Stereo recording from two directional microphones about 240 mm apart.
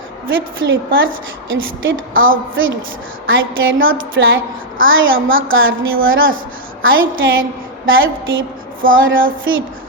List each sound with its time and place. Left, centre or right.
0.3 s a woman's voice: right